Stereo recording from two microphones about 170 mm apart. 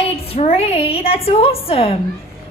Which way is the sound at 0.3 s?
35° left (ahead or behind).